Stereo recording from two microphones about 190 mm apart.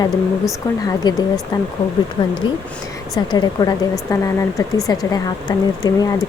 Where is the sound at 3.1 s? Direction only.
20° left (ahead or behind).